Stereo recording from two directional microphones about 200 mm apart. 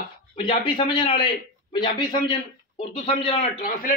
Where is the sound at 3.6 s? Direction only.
45° left (ahead or behind).